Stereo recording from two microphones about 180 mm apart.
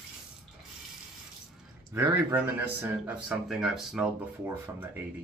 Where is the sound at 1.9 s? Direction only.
10° right (ahead or behind).